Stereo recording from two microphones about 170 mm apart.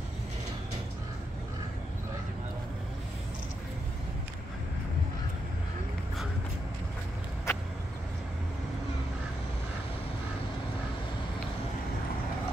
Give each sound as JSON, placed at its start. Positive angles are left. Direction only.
{"t": 7.5, "sound": "vehicle", "side_deg": 15}